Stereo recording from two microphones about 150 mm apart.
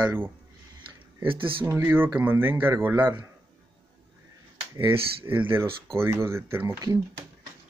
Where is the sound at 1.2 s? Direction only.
35° right (ahead or behind).